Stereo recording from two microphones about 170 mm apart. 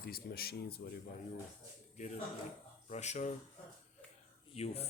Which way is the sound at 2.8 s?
40° left (ahead or behind).